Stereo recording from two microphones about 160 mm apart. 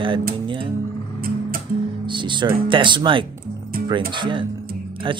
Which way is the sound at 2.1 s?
30° right (ahead or behind).